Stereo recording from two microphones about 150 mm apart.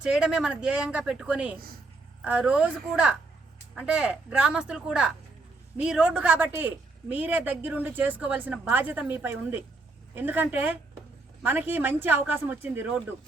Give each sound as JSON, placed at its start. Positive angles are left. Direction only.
{"t": 0.0, "sound": "a woman's voice", "side_deg": -5}
{"t": 1.5, "sound": "speech", "side_deg": -80}
{"t": 2.2, "sound": "a woman's voice", "side_deg": -10}